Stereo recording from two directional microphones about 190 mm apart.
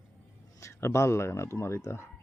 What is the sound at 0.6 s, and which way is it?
Speech, 15° left (ahead or behind).